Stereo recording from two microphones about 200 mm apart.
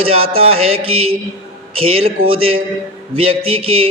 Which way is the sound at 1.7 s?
25° right (ahead or behind).